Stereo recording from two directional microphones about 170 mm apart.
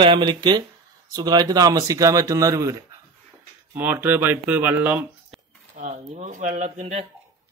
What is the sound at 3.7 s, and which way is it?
Speech, 10° right (ahead or behind).